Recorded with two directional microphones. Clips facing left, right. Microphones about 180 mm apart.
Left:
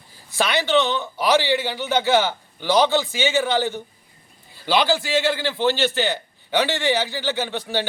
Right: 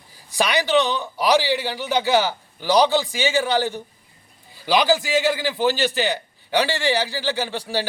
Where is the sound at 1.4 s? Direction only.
5° right (ahead or behind).